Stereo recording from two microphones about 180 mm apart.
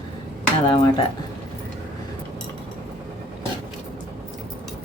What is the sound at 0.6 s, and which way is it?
Speech, 25° left (ahead or behind).